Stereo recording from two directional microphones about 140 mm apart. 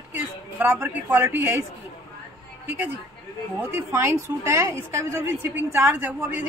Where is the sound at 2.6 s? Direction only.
15° right (ahead or behind).